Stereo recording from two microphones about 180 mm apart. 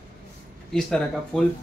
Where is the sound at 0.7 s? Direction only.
5° left (ahead or behind).